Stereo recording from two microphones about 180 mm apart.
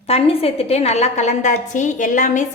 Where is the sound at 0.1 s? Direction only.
35° left (ahead or behind).